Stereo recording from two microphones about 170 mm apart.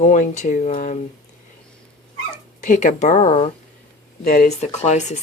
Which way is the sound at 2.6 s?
50° left (ahead or behind).